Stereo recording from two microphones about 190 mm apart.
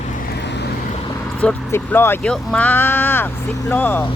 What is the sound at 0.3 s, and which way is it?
Vehicle, 65° left (ahead or behind).